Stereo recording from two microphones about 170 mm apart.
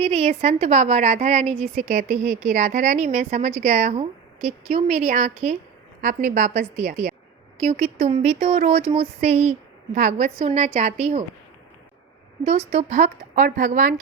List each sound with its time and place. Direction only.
0.0 s a woman's voice: 35° right (ahead or behind)
12.5 s a woman's voice: 35° right (ahead or behind)